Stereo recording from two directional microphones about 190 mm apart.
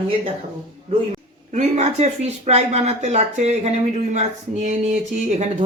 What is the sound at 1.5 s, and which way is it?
A woman's voice, 35° right (ahead or behind).